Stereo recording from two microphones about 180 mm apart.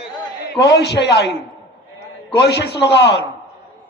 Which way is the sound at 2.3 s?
70° left (ahead or behind).